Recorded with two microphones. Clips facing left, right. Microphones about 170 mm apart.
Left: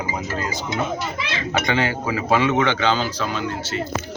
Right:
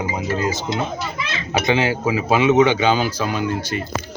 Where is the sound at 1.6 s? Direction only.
15° right (ahead or behind).